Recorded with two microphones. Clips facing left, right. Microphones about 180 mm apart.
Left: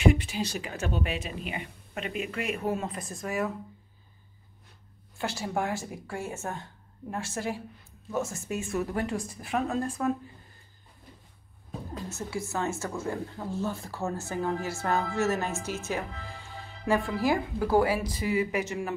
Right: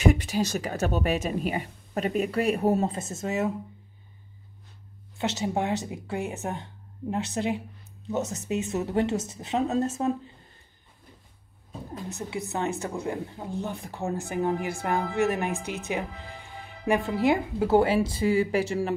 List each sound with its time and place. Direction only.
0.0 s speech: 40° right (ahead or behind)
3.0 s speech: 25° right (ahead or behind)
5.1 s speech: 20° right (ahead or behind)
12.1 s a woman's voice: 20° right (ahead or behind)